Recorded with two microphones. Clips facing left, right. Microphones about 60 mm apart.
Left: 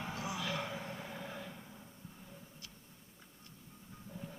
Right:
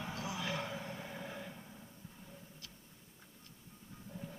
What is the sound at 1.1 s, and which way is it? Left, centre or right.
Vehicle, centre.